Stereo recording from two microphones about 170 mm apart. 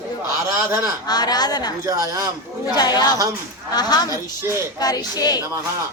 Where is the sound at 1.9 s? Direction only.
20° right (ahead or behind).